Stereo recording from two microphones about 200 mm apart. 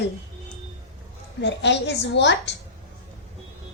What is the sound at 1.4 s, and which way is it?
A child's voice, 60° left (ahead or behind).